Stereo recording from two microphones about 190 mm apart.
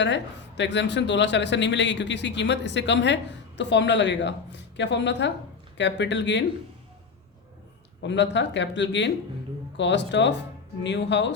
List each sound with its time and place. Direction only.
0.0 s speech: 70° left (ahead or behind)
8.0 s speech: 65° left (ahead or behind)